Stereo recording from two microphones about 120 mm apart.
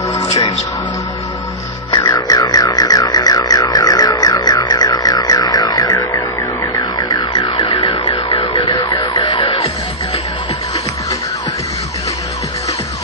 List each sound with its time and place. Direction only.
1.9 s music: 35° left (ahead or behind)
6.7 s car alarm: 35° left (ahead or behind)